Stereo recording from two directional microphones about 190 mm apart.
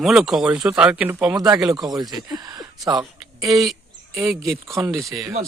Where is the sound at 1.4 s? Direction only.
20° right (ahead or behind).